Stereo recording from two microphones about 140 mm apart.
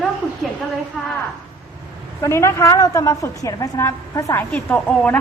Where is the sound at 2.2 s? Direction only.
20° left (ahead or behind).